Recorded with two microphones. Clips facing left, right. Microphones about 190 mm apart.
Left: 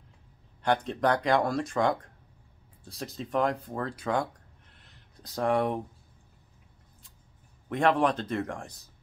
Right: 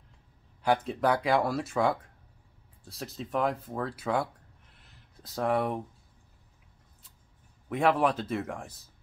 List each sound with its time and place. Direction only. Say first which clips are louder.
0.6 s speech: even; 5° right (ahead or behind)
4.7 s a sound: left 1 dB; centre (ahead or behind)
7.7 s speech: left 1 dB; 5° right (ahead or behind)